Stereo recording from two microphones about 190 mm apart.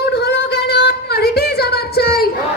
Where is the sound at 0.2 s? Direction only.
60° left (ahead or behind).